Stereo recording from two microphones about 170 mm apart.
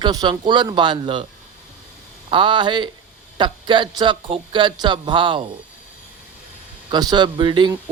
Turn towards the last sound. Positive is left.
turn(degrees=-25)  # may be behind; listen again after turning